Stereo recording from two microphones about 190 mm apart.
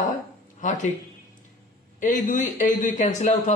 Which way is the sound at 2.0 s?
40° left (ahead or behind).